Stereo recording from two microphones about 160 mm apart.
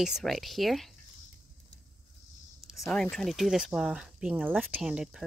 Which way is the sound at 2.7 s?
Centre (ahead or behind).